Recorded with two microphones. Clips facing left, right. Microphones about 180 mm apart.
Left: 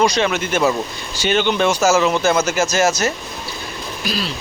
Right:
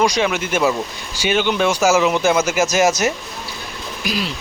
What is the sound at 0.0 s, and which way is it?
Speech, 10° right (ahead or behind).